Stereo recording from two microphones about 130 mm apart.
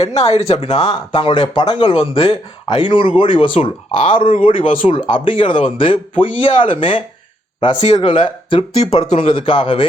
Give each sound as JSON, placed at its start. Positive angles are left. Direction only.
{"t": 0.0, "sound": "speech", "side_deg": 50}